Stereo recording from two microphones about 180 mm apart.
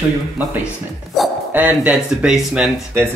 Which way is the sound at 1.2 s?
Centre (ahead or behind).